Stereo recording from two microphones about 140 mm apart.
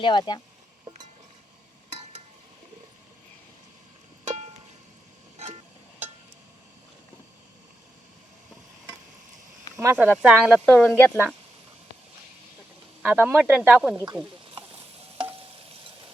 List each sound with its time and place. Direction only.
0.0 s speech: 30° left (ahead or behind)
9.7 s speech: 15° right (ahead or behind)
10.7 s speech: 5° left (ahead or behind)
13.0 s speech: 15° right (ahead or behind)